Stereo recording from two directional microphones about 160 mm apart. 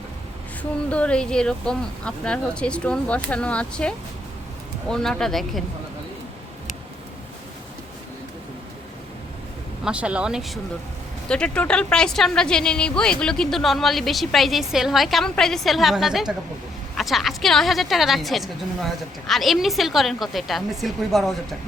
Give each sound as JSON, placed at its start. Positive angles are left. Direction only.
{"t": 0.9, "sound": "speech", "side_deg": 5}
{"t": 9.8, "sound": "speech", "side_deg": -5}